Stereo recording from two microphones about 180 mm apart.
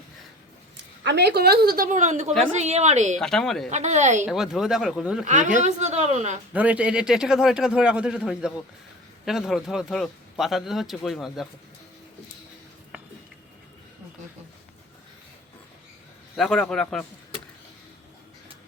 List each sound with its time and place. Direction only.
1.0 s a woman's voice: 70° right (ahead or behind); by 3.2 s 40° right (ahead or behind)
3.2 s speech: 5° left (ahead or behind)
3.7 s speech: 40° right (ahead or behind)
4.3 s speech: centre (ahead or behind)
5.2 s speech: 45° right (ahead or behind)
6.5 s speech: 10° right (ahead or behind)
16.3 s speech: 5° left (ahead or behind)